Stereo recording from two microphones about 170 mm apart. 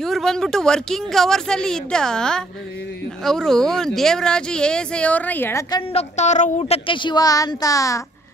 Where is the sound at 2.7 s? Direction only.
85° left.